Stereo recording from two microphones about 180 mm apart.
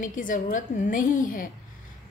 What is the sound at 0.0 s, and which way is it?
A woman's voice, 45° left (ahead or behind).